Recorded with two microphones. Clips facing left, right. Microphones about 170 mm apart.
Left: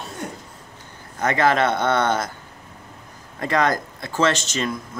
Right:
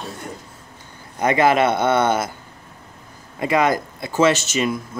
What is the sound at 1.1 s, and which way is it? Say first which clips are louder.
Speech: right 3 dB; 10° right (ahead or behind).